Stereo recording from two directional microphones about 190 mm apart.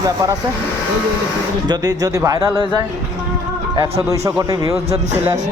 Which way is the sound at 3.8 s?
20° right (ahead or behind).